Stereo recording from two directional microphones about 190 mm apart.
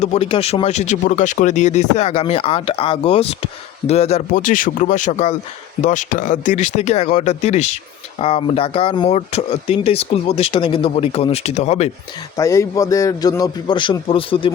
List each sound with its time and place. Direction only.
0.0 s speech: 30° left (ahead or behind)
12.4 s a man's voice: 15° left (ahead or behind)